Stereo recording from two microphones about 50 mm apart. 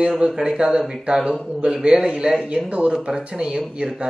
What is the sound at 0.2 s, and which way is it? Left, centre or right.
A man's voice, centre.